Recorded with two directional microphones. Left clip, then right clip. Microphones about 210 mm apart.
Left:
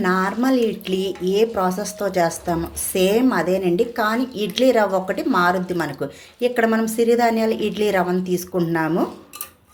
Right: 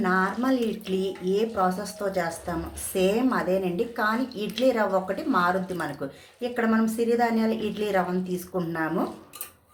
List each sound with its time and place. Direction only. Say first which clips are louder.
0.0 s speech: left 4 dB; 35° left (ahead or behind)